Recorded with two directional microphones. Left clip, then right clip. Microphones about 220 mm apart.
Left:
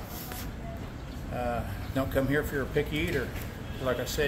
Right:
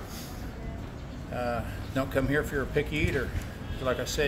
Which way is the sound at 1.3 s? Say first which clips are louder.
Right 1 dB; 5° right (ahead or behind).